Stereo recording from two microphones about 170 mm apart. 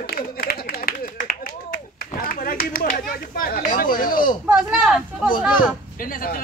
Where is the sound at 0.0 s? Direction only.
60° left (ahead or behind).